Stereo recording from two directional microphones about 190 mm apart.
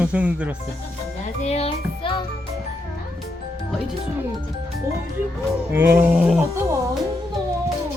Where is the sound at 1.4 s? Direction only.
35° left (ahead or behind).